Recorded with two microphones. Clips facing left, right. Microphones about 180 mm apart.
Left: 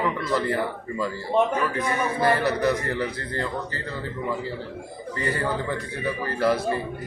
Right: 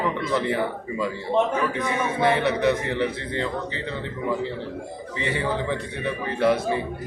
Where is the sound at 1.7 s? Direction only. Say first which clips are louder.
Even; centre (ahead or behind).